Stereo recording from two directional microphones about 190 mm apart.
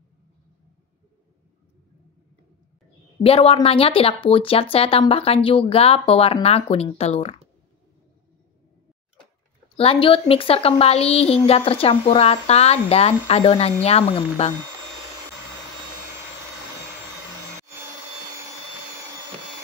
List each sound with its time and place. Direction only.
3.2 s a woman's voice: 30° left (ahead or behind)
9.8 s a woman's voice: 30° left (ahead or behind)